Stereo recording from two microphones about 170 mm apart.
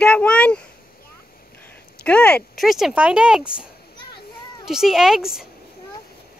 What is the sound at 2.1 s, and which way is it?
Speech, 5° left (ahead or behind).